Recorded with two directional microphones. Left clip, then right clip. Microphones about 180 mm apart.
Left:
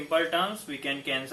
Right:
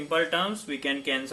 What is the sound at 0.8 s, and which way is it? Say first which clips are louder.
Speech: right 2 dB; 60° right (ahead or behind).